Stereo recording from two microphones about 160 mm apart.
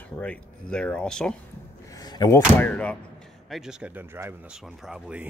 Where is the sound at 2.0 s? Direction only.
25° left (ahead or behind).